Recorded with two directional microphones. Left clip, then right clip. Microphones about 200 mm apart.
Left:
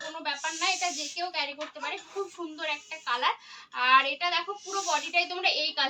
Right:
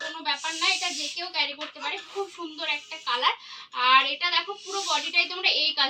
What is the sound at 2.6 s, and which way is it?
A woman's voice, centre (ahead or behind).